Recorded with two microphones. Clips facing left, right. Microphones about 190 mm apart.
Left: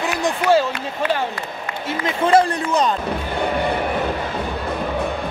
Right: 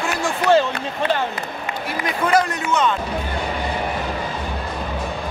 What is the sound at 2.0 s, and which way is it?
Speech, 25° left (ahead or behind).